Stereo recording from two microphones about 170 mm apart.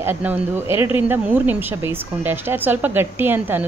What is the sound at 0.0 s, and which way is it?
Speech, 10° right (ahead or behind).